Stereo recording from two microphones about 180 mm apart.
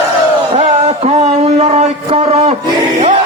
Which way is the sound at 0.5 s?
35° right (ahead or behind).